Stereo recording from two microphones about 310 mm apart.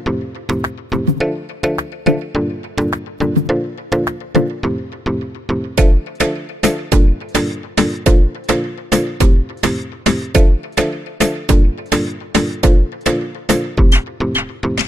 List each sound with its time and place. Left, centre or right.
0.0 s music: centre